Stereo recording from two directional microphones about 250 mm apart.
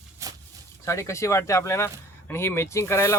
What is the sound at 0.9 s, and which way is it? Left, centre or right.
Speech, centre.